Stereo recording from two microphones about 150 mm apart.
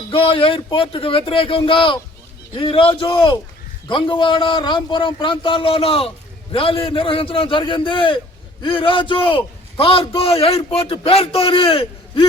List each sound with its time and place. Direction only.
0.1 s a man's voice: 35° left (ahead or behind)